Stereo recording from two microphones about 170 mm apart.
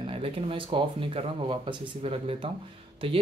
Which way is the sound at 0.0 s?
30° right (ahead or behind).